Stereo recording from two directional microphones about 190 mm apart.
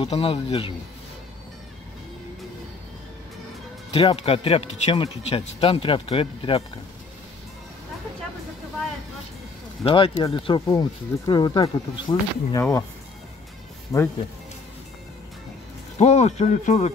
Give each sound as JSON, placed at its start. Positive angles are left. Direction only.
{"t": 0.0, "sound": "speech", "side_deg": 30}
{"t": 3.9, "sound": "speech", "side_deg": 30}
{"t": 9.8, "sound": "speech", "side_deg": 30}
{"t": 13.9, "sound": "speech", "side_deg": 15}
{"t": 16.0, "sound": "speech", "side_deg": 35}